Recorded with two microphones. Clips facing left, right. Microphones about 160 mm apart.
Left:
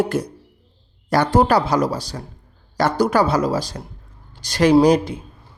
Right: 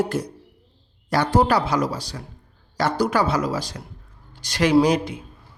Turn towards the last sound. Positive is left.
turn(degrees=35)  # may be behind; listen again after turning